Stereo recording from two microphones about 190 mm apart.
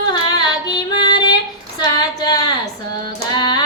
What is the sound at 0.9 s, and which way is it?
Female singing, 20° left (ahead or behind).